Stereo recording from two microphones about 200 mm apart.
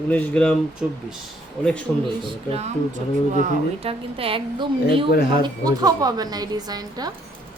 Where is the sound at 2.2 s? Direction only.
25° right (ahead or behind).